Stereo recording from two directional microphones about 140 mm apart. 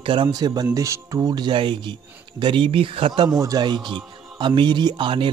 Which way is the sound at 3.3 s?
25° right (ahead or behind).